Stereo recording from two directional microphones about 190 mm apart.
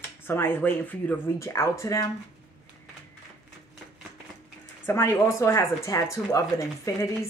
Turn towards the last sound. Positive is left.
turn(degrees=15)  # may be behind; listen again after turning